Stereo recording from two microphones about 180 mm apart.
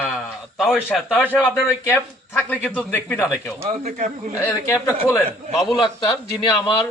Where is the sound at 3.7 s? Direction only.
40° right (ahead or behind).